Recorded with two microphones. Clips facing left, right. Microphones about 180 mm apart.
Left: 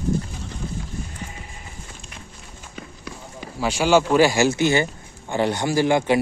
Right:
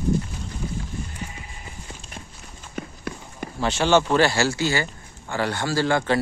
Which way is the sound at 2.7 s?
55° right (ahead or behind).